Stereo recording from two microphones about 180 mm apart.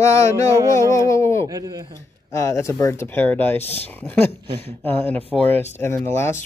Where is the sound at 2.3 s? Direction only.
15° left (ahead or behind).